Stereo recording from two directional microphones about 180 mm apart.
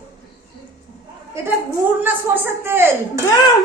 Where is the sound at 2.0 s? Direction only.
10° right (ahead or behind).